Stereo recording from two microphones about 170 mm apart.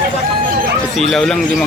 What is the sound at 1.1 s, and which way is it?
Speech, 5° left (ahead or behind).